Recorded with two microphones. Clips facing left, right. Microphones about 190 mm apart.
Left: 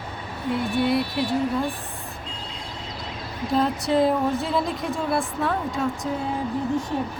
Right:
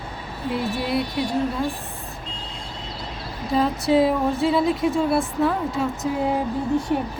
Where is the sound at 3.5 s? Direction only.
Centre (ahead or behind).